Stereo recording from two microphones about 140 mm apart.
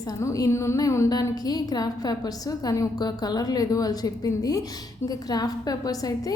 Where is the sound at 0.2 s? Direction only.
25° left (ahead or behind).